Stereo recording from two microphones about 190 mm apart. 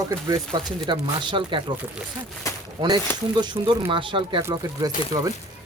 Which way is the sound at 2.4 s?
15° left (ahead or behind).